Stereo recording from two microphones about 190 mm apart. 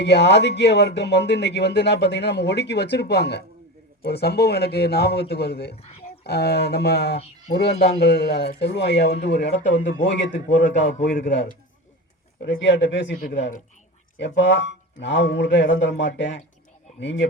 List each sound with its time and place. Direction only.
0.0 s speech: 65° left (ahead or behind)